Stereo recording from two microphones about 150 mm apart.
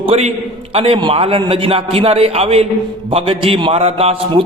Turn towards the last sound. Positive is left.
turn(degrees=-45)  # may be behind; listen again after turning